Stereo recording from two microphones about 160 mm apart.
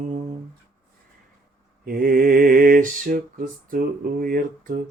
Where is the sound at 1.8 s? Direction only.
65° right (ahead or behind).